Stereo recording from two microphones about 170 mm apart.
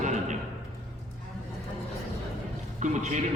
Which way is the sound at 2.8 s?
45° right (ahead or behind).